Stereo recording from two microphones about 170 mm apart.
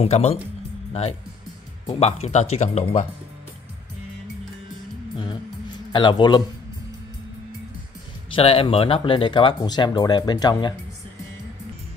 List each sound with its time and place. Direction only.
0.0 s speech: 35° left (ahead or behind)
1.9 s speech: 35° left (ahead or behind)
5.1 s music: 30° left (ahead or behind)
5.9 s a man's voice: 25° left (ahead or behind)
8.3 s speech: 35° left (ahead or behind)